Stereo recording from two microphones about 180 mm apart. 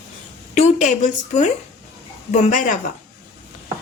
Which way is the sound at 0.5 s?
40° left (ahead or behind).